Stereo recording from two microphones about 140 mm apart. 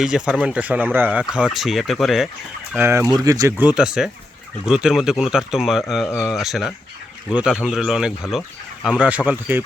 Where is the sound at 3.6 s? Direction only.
5° right (ahead or behind).